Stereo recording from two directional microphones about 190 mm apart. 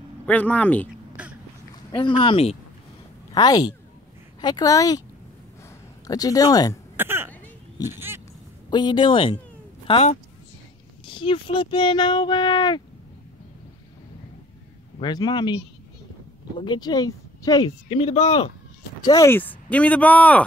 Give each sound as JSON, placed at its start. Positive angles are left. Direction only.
{"t": 0.3, "sound": "speech", "side_deg": 10}
{"t": 1.2, "sound": "a sound", "side_deg": -5}
{"t": 1.9, "sound": "a woman's voice", "side_deg": 25}
{"t": 6.0, "sound": "a woman's voice", "side_deg": 20}
{"t": 7.0, "sound": "throat clearing", "side_deg": -10}
{"t": 7.8, "sound": "speech", "side_deg": -10}
{"t": 8.6, "sound": "a woman's voice", "side_deg": 25}
{"t": 15.0, "sound": "a woman's voice", "side_deg": 20}
{"t": 16.6, "sound": "a woman's voice", "side_deg": 20}
{"t": 19.0, "sound": "speech", "side_deg": 15}